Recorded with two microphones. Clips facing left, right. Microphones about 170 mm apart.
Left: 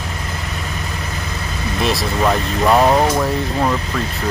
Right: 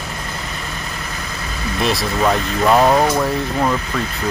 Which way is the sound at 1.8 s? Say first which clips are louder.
Even; centre (ahead or behind).